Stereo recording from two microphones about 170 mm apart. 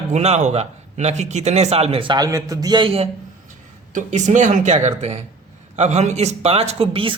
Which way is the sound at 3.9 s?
45° right (ahead or behind).